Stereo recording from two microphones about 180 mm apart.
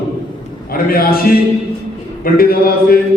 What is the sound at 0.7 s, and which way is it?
Speech, 55° left (ahead or behind).